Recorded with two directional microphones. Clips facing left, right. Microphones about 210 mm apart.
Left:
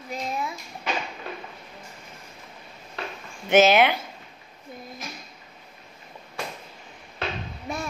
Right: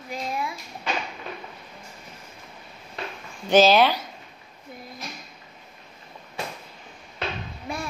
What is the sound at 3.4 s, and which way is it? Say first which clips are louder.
Speech: right 1 dB; 20° left (ahead or behind).